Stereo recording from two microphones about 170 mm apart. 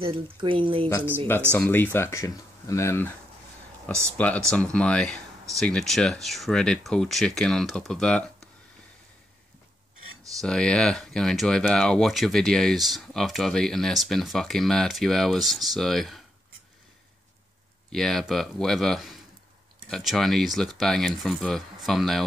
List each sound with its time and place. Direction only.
0.0 s speech: 30° right (ahead or behind)
1.5 s speech: 10° left (ahead or behind)
10.4 s speech: 5° left (ahead or behind)
17.9 s speech: centre (ahead or behind)